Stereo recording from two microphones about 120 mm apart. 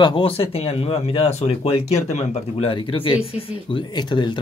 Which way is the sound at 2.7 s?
45° left (ahead or behind).